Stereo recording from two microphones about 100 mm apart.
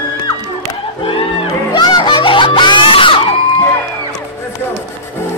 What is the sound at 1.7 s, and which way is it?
Music, 50° left (ahead or behind).